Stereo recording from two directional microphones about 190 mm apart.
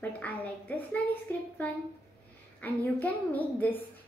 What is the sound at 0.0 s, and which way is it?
A woman's voice, 10° left (ahead or behind).